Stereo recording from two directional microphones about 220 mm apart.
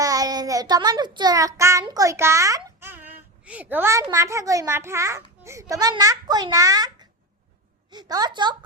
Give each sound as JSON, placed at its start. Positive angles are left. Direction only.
{"t": 0.0, "sound": "a child's voice", "side_deg": -15}